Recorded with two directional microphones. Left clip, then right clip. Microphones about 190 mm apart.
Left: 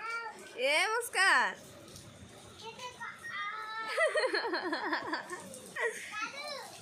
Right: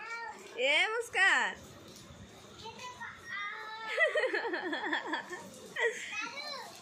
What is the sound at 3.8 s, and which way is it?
Speech, 10° left (ahead or behind).